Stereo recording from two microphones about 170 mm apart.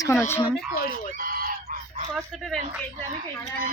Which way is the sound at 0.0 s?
15° left (ahead or behind).